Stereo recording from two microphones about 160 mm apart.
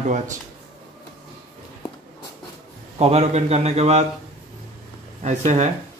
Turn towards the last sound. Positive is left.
turn(degrees=-50)  # may be behind; listen again after turning